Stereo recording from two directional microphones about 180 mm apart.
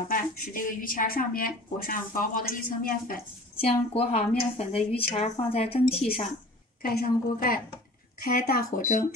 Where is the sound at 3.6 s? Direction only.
35° left (ahead or behind).